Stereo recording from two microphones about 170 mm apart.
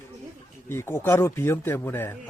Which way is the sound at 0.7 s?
15° left (ahead or behind).